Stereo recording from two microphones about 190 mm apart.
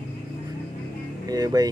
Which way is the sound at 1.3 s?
20° right (ahead or behind).